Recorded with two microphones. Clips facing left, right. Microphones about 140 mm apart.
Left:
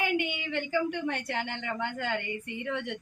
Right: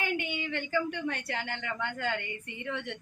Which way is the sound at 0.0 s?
15° left (ahead or behind).